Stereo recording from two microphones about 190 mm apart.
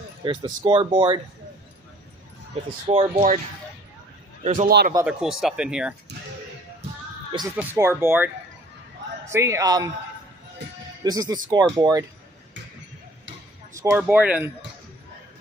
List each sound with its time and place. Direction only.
0.2 s speech: 25° right (ahead or behind)
2.9 s speech: 35° right (ahead or behind)
4.4 s a man's voice: 35° right (ahead or behind)
4.6 s speech: 55° right (ahead or behind)
5.0 s speech: 5° right (ahead or behind)
7.5 s speech: 10° right (ahead or behind)
9.3 s speech: 15° right (ahead or behind)
11.1 s speech: 20° right (ahead or behind)
13.7 s speech: 10° right (ahead or behind)